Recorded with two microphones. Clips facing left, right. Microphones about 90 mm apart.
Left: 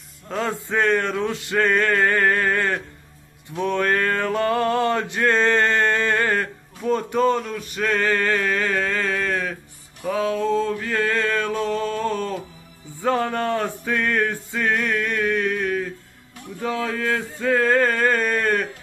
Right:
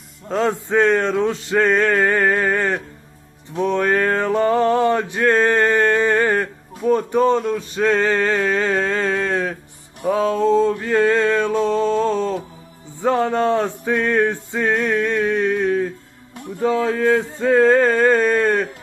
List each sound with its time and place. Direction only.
0.3 s male singing: 20° right (ahead or behind)
3.5 s a sound: 15° right (ahead or behind)
10.0 s male singing: 25° right (ahead or behind)
13.0 s music: 20° right (ahead or behind)
16.5 s male singing: 25° right (ahead or behind)